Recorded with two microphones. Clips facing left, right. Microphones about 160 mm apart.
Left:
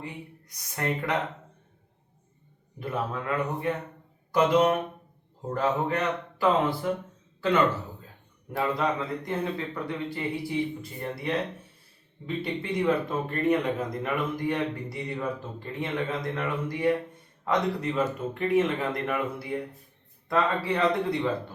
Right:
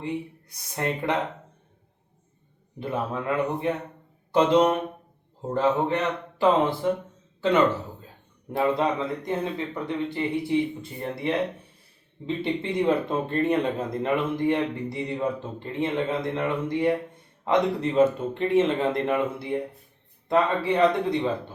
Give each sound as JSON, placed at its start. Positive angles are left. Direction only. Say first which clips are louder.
{"t": 0.0, "sound": "speech", "louder": "right 9 dB", "side_deg": -25}
{"t": 2.7, "sound": "speech", "louder": "right 2 dB", "side_deg": -25}
{"t": 4.3, "sound": "a sound", "louder": "right 2 dB", "side_deg": -25}
{"t": 5.5, "sound": "speech", "louder": "right 4 dB", "side_deg": -25}
{"t": 8.5, "sound": "speech", "louder": "right 4 dB", "side_deg": -25}